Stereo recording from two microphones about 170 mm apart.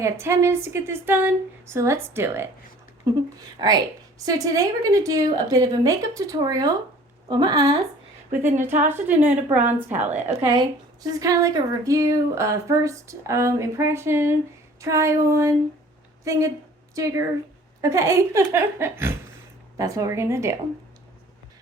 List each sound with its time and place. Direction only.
0.0 s a woman's voice: 15° right (ahead or behind)
10.4 s a woman's voice: 25° right (ahead or behind)